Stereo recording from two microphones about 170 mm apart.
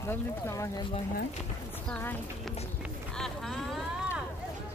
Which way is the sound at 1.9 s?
10° left (ahead or behind).